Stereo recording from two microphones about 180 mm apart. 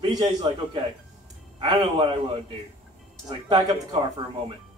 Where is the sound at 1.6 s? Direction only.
30° right (ahead or behind).